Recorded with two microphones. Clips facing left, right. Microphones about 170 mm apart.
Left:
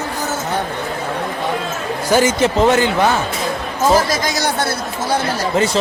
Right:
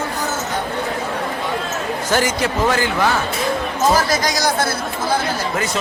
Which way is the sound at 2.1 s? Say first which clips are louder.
Left 6 dB; 20° left (ahead or behind).